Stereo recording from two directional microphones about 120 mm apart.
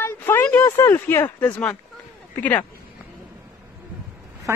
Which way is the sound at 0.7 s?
20° left (ahead or behind).